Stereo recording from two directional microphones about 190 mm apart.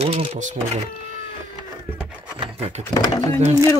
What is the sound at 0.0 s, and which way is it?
Speech, 30° right (ahead or behind).